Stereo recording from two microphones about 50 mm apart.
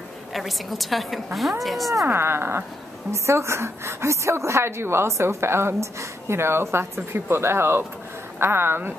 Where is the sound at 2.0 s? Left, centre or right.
Right.